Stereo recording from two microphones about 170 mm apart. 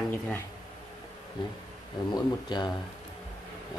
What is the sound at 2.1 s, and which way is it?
Speech, 25° left (ahead or behind).